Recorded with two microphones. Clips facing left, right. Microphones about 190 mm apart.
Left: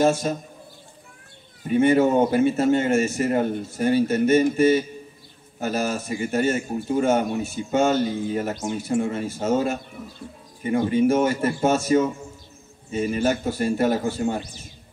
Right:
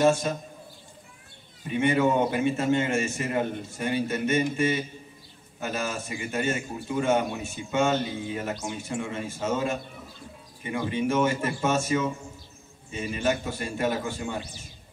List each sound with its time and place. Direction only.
0.0 s a man's voice: 40° left (ahead or behind)
1.7 s a man's voice: 40° left (ahead or behind)